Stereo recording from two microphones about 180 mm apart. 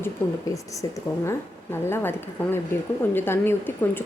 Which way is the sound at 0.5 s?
15° left (ahead or behind).